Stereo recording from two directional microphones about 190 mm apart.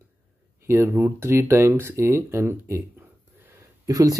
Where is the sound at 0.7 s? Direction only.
10° right (ahead or behind).